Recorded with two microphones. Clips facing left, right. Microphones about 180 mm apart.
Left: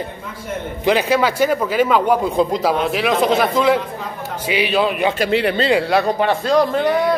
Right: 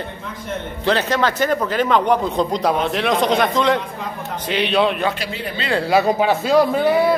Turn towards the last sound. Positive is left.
turn(degrees=-5)  # may be behind; listen again after turning